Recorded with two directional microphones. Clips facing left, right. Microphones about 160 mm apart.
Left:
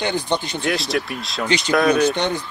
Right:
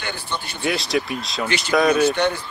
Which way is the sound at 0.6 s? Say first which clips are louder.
Even; centre (ahead or behind).